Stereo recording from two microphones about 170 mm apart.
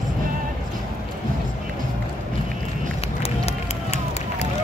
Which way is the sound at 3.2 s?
40° left (ahead or behind).